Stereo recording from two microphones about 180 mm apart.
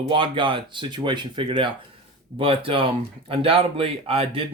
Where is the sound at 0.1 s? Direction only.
30° right (ahead or behind).